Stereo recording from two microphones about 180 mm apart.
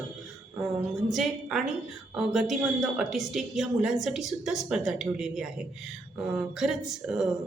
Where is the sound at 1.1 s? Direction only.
Centre (ahead or behind).